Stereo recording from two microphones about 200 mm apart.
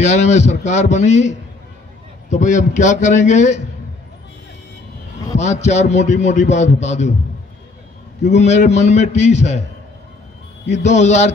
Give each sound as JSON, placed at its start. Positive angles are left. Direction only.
{"t": 0.0, "sound": "a man's voice", "side_deg": 35}
{"t": 5.3, "sound": "a man's voice", "side_deg": 35}
{"t": 8.2, "sound": "a man's voice", "side_deg": 35}
{"t": 10.7, "sound": "a man's voice", "side_deg": 35}